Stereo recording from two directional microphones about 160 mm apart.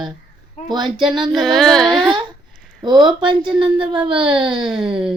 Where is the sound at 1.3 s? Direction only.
Centre (ahead or behind).